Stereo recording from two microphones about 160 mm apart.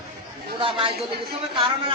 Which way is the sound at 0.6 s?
35° right (ahead or behind).